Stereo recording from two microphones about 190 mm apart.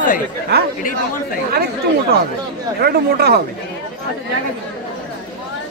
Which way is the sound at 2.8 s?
55° right (ahead or behind).